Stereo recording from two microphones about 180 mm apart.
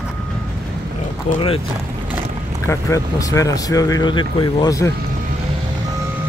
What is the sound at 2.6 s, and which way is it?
Speech, 15° left (ahead or behind).